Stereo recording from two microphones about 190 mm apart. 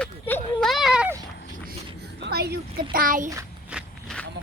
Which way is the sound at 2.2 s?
60° right (ahead or behind).